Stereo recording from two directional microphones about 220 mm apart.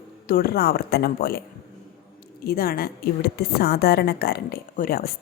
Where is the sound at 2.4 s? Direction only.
45° left (ahead or behind).